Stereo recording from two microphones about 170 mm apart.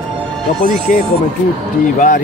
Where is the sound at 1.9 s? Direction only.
50° left (ahead or behind).